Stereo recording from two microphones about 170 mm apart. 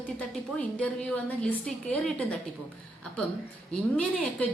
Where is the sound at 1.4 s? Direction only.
5° left (ahead or behind).